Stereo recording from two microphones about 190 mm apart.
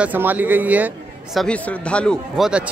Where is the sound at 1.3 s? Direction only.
5° left (ahead or behind).